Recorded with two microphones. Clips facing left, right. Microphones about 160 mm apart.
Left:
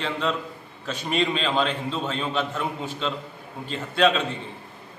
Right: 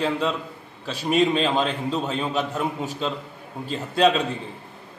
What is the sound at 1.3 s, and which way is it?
A man's voice, 20° right (ahead or behind).